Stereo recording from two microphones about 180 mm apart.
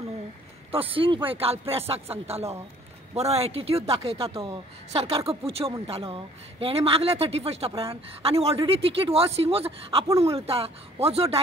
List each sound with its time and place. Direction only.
0.7 s speech: 30° right (ahead or behind)